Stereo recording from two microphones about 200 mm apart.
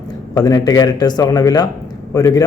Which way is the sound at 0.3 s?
20° left (ahead or behind).